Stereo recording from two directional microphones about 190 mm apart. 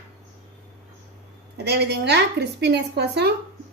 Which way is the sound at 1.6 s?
60° right (ahead or behind).